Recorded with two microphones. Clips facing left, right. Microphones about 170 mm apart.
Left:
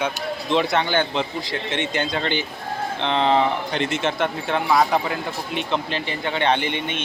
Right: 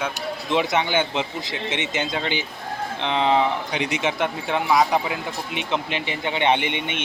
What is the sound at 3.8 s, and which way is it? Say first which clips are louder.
Speech: even; 15° right (ahead or behind).